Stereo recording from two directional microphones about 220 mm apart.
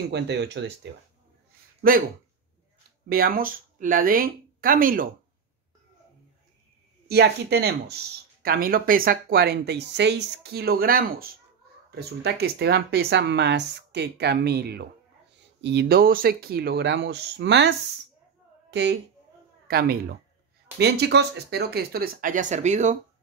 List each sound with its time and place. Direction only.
0.1 s speech: 50° right (ahead or behind)
1.8 s speech: 40° right (ahead or behind)
3.1 s speech: 40° right (ahead or behind)
7.1 s speech: 45° right (ahead or behind)